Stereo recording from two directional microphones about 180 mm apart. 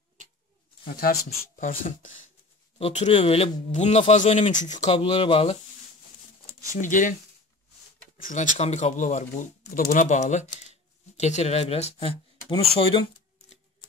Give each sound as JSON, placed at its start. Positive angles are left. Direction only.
{"t": 0.8, "sound": "speech", "side_deg": 55}
{"t": 2.8, "sound": "speech", "side_deg": 35}
{"t": 4.9, "sound": "speech", "side_deg": 30}
{"t": 6.8, "sound": "speech", "side_deg": 45}
{"t": 8.2, "sound": "speech", "side_deg": 45}